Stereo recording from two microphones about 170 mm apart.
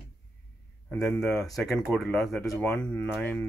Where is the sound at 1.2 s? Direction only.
5° left (ahead or behind).